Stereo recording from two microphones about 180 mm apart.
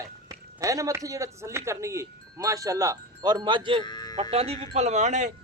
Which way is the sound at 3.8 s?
20° left (ahead or behind).